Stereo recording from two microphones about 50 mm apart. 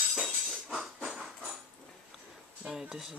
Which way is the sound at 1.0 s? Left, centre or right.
Centre.